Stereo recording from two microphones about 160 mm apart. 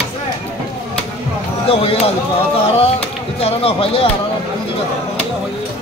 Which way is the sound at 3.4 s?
35° left (ahead or behind).